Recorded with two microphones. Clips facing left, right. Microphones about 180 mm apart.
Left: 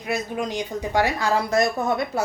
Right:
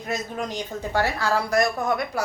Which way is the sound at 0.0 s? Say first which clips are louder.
Left 3 dB; 10° left (ahead or behind).